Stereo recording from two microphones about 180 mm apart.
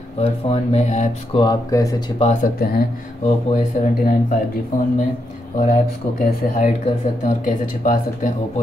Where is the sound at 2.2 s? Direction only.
40° left (ahead or behind).